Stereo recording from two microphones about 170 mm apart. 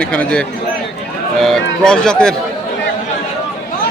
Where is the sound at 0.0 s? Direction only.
5° left (ahead or behind).